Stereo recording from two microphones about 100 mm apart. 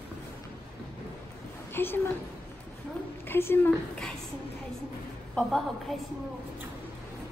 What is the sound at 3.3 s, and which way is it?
Speech, 20° left (ahead or behind).